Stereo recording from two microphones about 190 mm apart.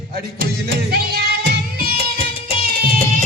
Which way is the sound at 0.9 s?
55° right (ahead or behind).